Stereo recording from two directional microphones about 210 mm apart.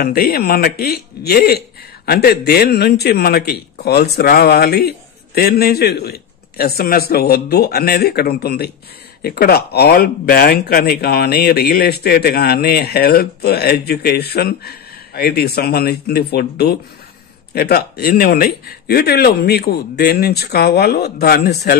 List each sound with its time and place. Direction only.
0.0 s speech: 45° left (ahead or behind)